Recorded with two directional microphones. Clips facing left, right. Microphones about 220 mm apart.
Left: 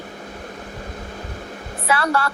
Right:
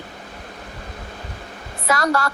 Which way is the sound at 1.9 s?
40° right (ahead or behind).